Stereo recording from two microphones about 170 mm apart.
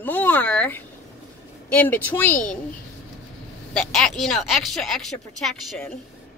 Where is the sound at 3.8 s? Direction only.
Centre (ahead or behind).